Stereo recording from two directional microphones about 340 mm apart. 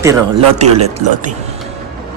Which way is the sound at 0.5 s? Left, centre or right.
Centre.